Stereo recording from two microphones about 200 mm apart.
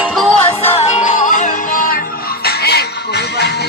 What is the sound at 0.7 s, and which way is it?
Music, 35° left (ahead or behind).